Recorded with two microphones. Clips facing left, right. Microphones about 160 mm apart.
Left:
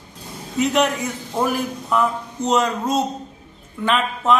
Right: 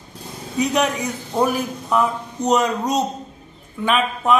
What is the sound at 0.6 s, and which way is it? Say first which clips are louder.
Speech: left 1 dB; 15° right (ahead or behind).